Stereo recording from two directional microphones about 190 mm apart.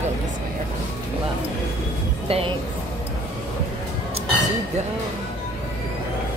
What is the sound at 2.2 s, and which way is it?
Speech, 30° right (ahead or behind).